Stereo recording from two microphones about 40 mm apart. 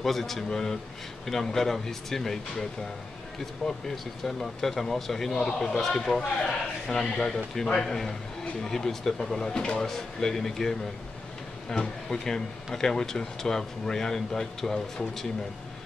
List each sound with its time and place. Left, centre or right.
0.0 s a man's voice: centre
3.9 s speech: centre